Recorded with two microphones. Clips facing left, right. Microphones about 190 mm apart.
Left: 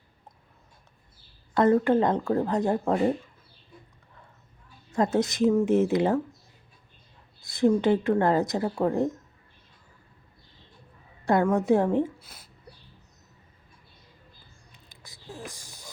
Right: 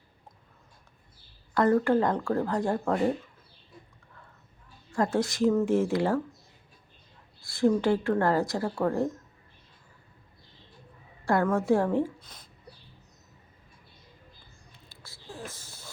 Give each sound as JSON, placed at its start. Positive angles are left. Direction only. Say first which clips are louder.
{"t": 1.5, "sound": "speech", "louder": "left 2 dB", "side_deg": 20}
{"t": 4.9, "sound": "speech", "louder": "left 2 dB", "side_deg": 20}
{"t": 7.4, "sound": "speech", "louder": "left 2 dB", "side_deg": 20}
{"t": 11.4, "sound": "speech", "louder": "left 1 dB", "side_deg": 20}
{"t": 12.2, "sound": "speech", "louder": "even", "side_deg": 10}
{"t": 14.8, "sound": "a sound", "louder": "left 1 dB", "side_deg": 15}